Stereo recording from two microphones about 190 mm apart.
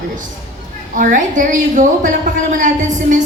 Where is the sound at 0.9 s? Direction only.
45° right (ahead or behind).